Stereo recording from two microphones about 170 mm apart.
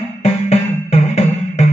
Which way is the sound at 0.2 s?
40° left (ahead or behind).